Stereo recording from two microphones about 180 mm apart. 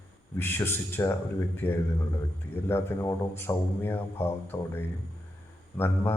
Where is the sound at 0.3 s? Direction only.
15° left (ahead or behind).